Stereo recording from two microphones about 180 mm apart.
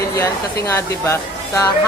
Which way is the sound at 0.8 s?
15° left (ahead or behind).